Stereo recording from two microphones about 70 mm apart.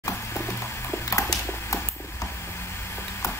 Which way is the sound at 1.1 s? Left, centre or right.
Left.